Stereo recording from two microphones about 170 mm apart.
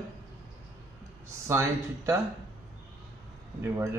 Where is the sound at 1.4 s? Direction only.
15° right (ahead or behind).